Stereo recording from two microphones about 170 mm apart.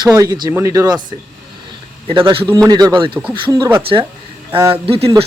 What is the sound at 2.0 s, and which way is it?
A man's voice, 30° right (ahead or behind).